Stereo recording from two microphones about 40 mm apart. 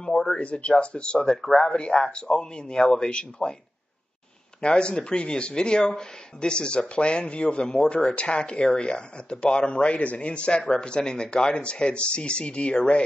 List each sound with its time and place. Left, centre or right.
0.0 s speech: centre
0.4 s speech: left
4.6 s speech: left